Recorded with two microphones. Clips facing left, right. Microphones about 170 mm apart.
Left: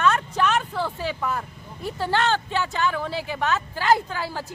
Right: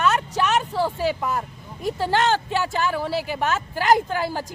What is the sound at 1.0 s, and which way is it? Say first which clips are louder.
Speech: right 4 dB; 15° right (ahead or behind).